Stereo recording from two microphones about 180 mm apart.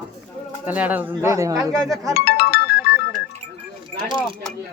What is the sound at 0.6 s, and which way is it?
Speech, 10° right (ahead or behind).